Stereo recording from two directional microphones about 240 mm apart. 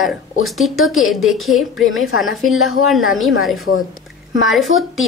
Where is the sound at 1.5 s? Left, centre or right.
Left.